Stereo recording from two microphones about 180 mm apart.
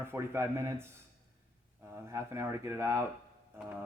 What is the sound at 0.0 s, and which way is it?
Speech, 15° right (ahead or behind).